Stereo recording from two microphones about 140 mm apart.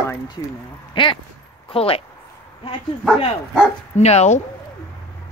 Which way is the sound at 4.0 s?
50° left (ahead or behind).